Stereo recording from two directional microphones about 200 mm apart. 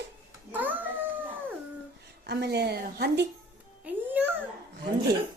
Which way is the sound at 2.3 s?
55° right (ahead or behind).